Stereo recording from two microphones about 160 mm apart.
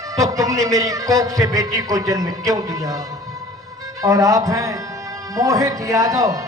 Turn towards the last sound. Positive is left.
turn(degrees=-20)  # may be behind; listen again after turning